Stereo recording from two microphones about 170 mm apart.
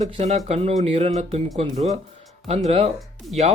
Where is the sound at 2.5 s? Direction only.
40° right (ahead or behind).